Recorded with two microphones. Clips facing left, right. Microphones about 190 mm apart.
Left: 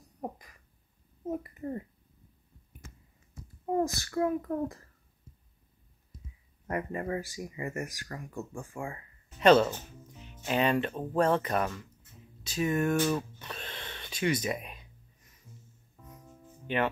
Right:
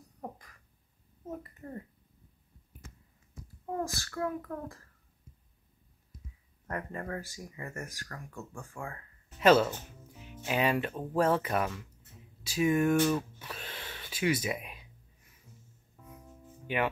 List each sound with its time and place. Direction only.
0.2 s a sound: 15° left (ahead or behind)
3.6 s a child's voice: 20° left (ahead or behind)
6.7 s speech: 15° left (ahead or behind)
9.4 s speech: 5° right (ahead or behind)
13.0 s a sound: 5° right (ahead or behind)
16.0 s music: 5° right (ahead or behind)
16.7 s speech: 10° right (ahead or behind)